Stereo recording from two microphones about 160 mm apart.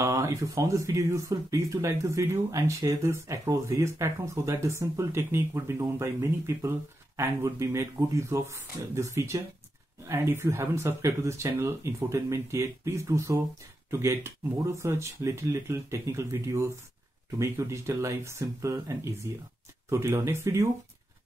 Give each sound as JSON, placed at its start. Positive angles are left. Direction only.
{"t": 0.0, "sound": "speech", "side_deg": -20}